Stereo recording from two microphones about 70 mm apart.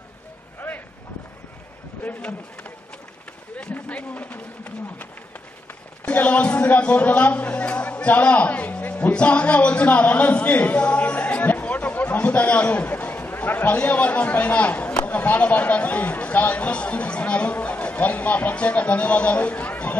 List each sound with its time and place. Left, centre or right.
0.6 s vehicle: centre
2.0 s a man's voice: centre
3.5 s a sound: centre
6.0 s a man's voice: left